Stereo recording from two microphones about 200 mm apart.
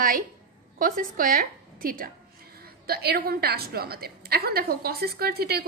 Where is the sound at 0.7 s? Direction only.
45° right (ahead or behind).